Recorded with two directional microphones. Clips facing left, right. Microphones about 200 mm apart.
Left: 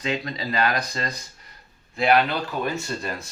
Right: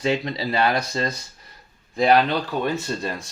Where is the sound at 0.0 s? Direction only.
30° right (ahead or behind).